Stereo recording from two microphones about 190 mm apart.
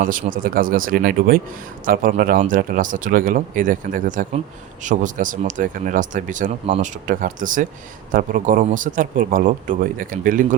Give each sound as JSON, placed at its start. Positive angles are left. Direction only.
{"t": 0.0, "sound": "speech", "side_deg": -45}
{"t": 6.7, "sound": "speech", "side_deg": -30}
{"t": 7.1, "sound": "speech", "side_deg": -45}